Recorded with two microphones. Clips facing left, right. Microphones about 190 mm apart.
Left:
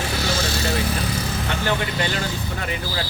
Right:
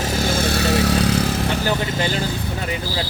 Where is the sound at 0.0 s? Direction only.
45° right (ahead or behind); by 1.3 s 75° right (ahead or behind).